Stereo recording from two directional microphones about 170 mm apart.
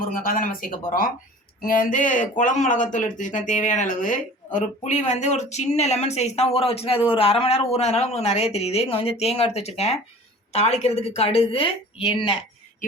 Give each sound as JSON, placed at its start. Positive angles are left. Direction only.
{"t": 0.0, "sound": "speech", "side_deg": 55}